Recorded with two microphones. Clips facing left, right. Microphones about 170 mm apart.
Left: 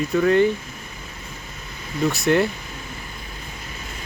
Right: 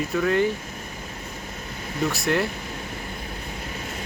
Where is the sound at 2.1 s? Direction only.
Centre (ahead or behind).